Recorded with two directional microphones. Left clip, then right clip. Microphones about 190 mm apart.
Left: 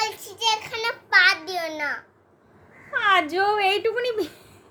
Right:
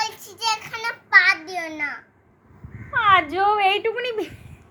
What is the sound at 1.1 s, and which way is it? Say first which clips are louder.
Child singing: right 2 dB; 35° left (ahead or behind).